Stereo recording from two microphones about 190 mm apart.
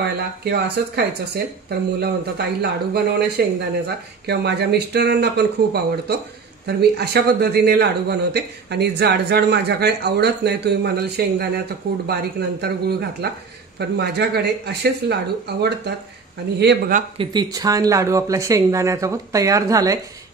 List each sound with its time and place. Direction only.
0.4 s a man's voice: 55° right (ahead or behind)
17.2 s speech: 20° right (ahead or behind)